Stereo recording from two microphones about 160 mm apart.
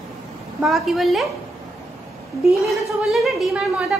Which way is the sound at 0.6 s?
Centre (ahead or behind).